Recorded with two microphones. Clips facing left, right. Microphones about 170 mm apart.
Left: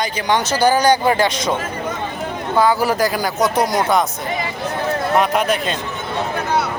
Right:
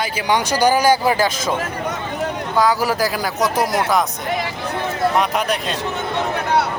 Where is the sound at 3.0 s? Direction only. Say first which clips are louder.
Left 2 dB; centre (ahead or behind).